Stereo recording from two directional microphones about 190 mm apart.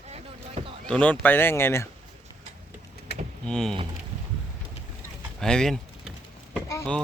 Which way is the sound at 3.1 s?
60° left (ahead or behind).